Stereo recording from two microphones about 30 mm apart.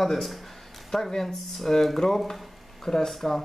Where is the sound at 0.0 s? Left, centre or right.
Centre.